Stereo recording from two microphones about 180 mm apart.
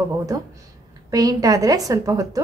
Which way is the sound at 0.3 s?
20° right (ahead or behind).